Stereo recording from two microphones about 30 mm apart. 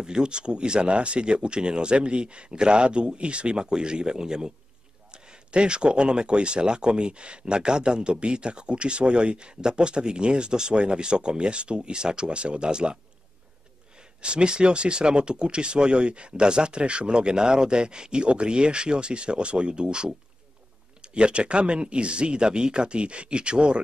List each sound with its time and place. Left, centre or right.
0.0 s speech: right